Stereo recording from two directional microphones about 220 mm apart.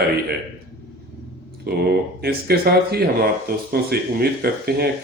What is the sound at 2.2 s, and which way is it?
Speech, 45° right (ahead or behind).